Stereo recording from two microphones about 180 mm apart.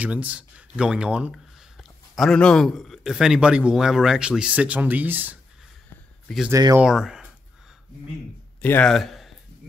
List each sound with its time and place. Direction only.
0.0 s speech: 10° right (ahead or behind)
6.5 s speech: 15° right (ahead or behind)
6.8 s speech: 5° right (ahead or behind)
8.5 s speech: 10° left (ahead or behind)